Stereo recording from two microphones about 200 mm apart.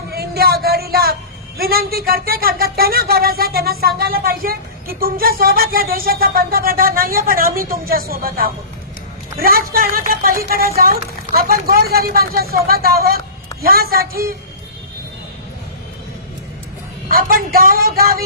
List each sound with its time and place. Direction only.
0.1 s a sound: 50° right (ahead or behind)
1.5 s speech: 50° right (ahead or behind)
17.1 s speech: 45° right (ahead or behind)